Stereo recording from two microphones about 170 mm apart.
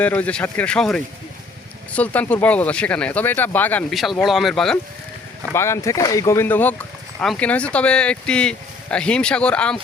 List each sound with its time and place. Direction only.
0.0 s speech: 10° left (ahead or behind)
5.5 s speech: 15° left (ahead or behind)